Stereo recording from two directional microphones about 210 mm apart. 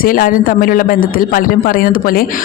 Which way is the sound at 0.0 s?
40° left (ahead or behind).